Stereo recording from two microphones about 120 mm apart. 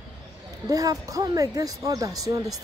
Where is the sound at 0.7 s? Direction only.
30° right (ahead or behind).